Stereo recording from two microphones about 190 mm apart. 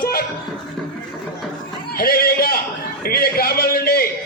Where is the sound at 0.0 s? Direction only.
50° left (ahead or behind).